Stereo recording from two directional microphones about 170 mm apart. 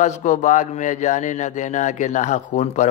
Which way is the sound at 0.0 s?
45° left (ahead or behind).